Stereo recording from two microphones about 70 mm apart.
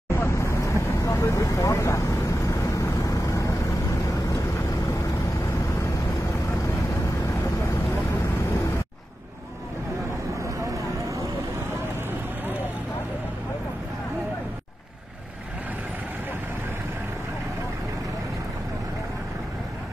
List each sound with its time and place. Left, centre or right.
0.1 s vehicle: left
10.4 s vehicle: right